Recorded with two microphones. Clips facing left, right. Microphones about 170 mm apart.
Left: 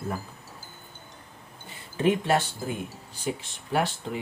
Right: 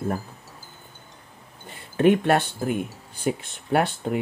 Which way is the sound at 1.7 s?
55° right (ahead or behind).